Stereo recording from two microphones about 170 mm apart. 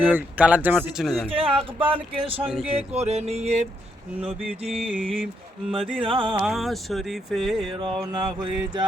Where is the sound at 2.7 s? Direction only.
40° right (ahead or behind).